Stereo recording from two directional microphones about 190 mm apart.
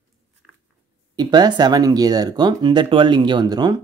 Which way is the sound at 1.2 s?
20° right (ahead or behind).